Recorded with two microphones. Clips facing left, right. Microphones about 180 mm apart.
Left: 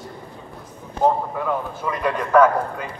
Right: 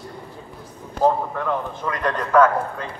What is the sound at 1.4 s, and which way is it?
A man's voice, 10° left (ahead or behind).